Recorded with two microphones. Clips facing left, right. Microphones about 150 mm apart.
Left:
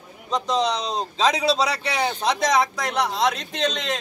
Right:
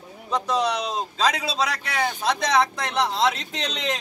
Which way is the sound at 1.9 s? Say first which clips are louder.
Even; 15° left (ahead or behind).